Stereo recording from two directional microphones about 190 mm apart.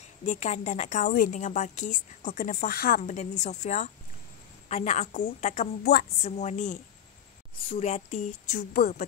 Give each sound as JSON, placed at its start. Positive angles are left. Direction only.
{"t": 0.0, "sound": "a woman's voice", "side_deg": 40}